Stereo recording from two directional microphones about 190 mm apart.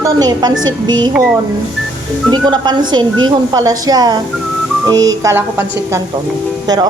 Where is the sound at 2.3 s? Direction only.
25° right (ahead or behind).